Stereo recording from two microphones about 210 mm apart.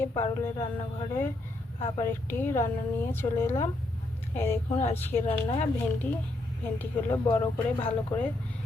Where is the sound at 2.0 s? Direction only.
10° left (ahead or behind).